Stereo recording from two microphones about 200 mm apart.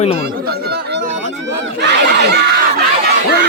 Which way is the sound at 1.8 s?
60° right (ahead or behind).